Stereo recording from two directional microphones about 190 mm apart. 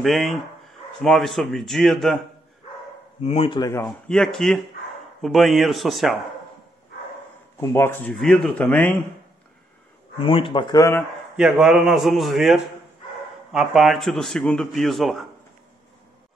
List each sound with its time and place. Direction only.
0.0 s speech: centre (ahead or behind)
3.3 s speech: 30° left (ahead or behind)
4.1 s speech: centre (ahead or behind)
7.7 s speech: 10° left (ahead or behind)
10.1 s speech: 25° left (ahead or behind)
11.3 s speech: 5° right (ahead or behind)